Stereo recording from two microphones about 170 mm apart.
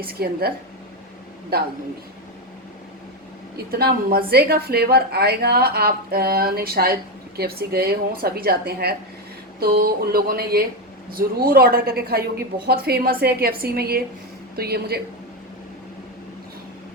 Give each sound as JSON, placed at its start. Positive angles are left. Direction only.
{"t": 0.0, "sound": "a woman's voice", "side_deg": -65}
{"t": 1.5, "sound": "a woman's voice", "side_deg": -65}
{"t": 3.7, "sound": "a woman's voice", "side_deg": -65}